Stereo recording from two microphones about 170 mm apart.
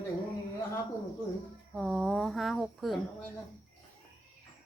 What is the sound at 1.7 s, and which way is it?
Speech, centre (ahead or behind).